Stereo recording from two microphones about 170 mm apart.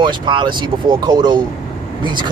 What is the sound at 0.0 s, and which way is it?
Speech, 25° right (ahead or behind).